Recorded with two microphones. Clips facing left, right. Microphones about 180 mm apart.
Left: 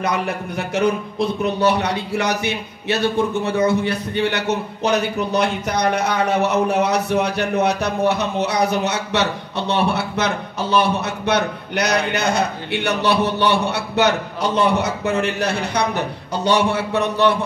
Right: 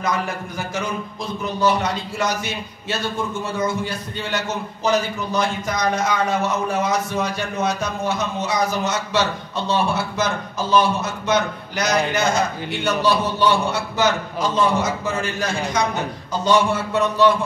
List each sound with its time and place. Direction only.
0.0 s a man's voice: 65° left (ahead or behind)